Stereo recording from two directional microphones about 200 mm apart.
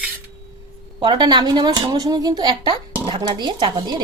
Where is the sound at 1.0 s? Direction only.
20° right (ahead or behind).